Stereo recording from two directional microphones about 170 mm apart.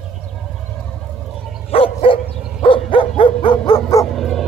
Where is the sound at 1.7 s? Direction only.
35° left (ahead or behind).